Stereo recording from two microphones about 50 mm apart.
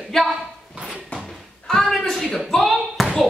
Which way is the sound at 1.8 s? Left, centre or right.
Centre.